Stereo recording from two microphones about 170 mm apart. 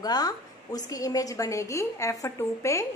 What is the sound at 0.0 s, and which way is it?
A woman's voice, 25° left (ahead or behind).